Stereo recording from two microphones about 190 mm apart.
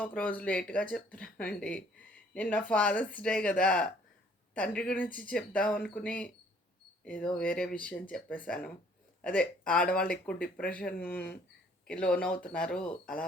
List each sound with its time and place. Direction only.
0.0 s speech: 10° left (ahead or behind)